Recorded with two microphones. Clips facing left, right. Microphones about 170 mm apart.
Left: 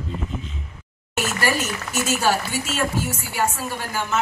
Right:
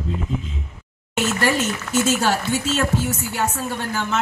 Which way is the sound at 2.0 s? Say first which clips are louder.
Even; 10° left (ahead or behind).